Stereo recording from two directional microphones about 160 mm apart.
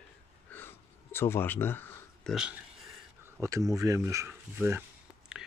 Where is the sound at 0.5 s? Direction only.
15° left (ahead or behind).